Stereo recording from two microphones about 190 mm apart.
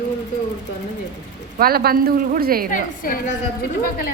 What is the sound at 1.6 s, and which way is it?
A woman's voice, 50° right (ahead or behind).